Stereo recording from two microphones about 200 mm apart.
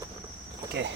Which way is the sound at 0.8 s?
60° right (ahead or behind).